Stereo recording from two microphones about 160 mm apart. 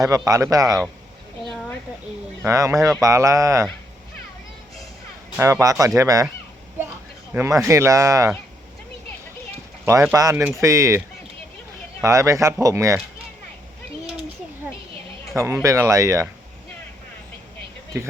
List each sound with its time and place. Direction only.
0.0 s speech: 20° right (ahead or behind)
2.4 s speech: 20° right (ahead or behind)
5.4 s speech: 20° right (ahead or behind)
7.3 s speech: 20° right (ahead or behind)
9.8 s speech: 15° right (ahead or behind)
12.0 s speech: 20° right (ahead or behind)
15.6 s speech: 20° right (ahead or behind)